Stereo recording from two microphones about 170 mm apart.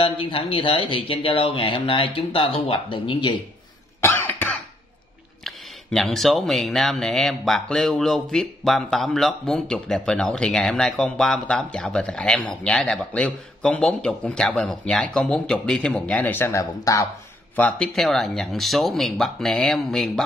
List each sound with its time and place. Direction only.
0.0 s speech: 30° left (ahead or behind)
4.0 s cough: 10° left (ahead or behind)
5.4 s speech: centre (ahead or behind); by 17.1 s 20° left (ahead or behind)
17.6 s speech: 5° left (ahead or behind)